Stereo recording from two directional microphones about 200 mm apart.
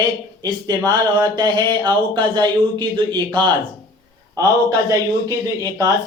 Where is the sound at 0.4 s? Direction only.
20° right (ahead or behind).